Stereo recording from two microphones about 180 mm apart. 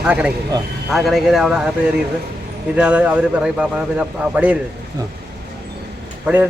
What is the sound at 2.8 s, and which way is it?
A man's voice, 5° right (ahead or behind).